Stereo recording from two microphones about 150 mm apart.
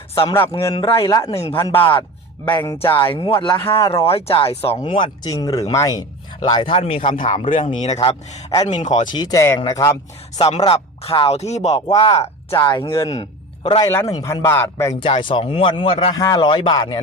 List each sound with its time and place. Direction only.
0.6 s speech: 20° left (ahead or behind)
1.3 s speech: 40° left (ahead or behind)
1.5 s speech: 15° left (ahead or behind)
1.8 s a sound: 35° left (ahead or behind)
3.1 s speech: 35° left (ahead or behind)
6.5 s speech: 35° left (ahead or behind)
8.6 s speech: 50° left (ahead or behind)
9.1 s speech: 25° left (ahead or behind)
10.3 s speech: 40° left (ahead or behind)
12.6 s speech: 25° left (ahead or behind)
13.8 s speech: 20° left (ahead or behind)
15.0 s speech: 35° left (ahead or behind)
16.1 s speech: 25° left (ahead or behind)